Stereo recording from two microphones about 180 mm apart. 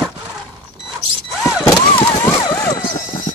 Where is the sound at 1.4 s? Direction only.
Centre (ahead or behind).